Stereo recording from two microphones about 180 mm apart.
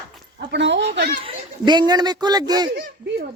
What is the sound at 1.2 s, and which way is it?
Speech, 25° right (ahead or behind).